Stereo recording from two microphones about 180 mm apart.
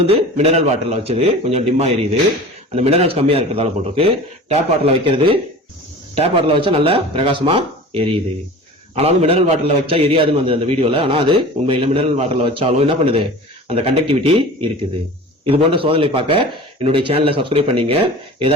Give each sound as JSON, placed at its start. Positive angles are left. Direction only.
{"t": 0.1, "sound": "a man's voice", "side_deg": -35}
{"t": 15.4, "sound": "a man's voice", "side_deg": -30}